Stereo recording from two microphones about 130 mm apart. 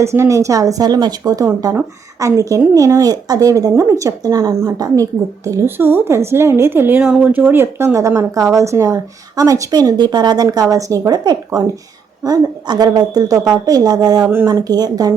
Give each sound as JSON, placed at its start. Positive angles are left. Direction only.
{"t": 0.0, "sound": "a woman's voice", "side_deg": -20}
{"t": 1.5, "sound": "a woman's voice", "side_deg": -15}